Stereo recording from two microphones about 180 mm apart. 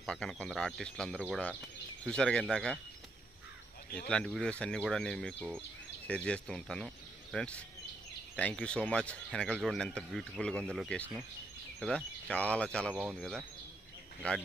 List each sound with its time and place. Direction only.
0.0 s speech: 5° left (ahead or behind)
4.1 s speech: 5° left (ahead or behind)